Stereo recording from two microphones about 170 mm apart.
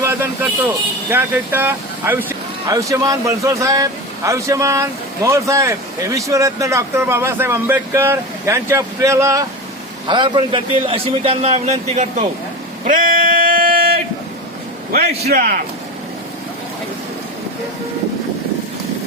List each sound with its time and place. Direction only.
0.0 s vehicle: 15° right (ahead or behind)
1.1 s a man's voice: 10° right (ahead or behind)
10.1 s a man's voice: 30° right (ahead or behind)
12.8 s a sound: 55° right (ahead or behind)
14.9 s a man's voice: 60° right (ahead or behind)